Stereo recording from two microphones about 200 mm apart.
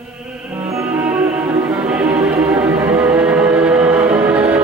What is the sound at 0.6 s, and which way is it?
Music, 10° right (ahead or behind).